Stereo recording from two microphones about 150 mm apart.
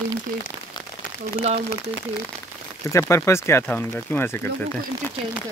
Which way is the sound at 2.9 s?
20° left (ahead or behind).